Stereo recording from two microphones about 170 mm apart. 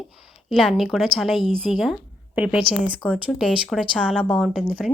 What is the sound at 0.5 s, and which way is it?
A woman's voice, centre (ahead or behind).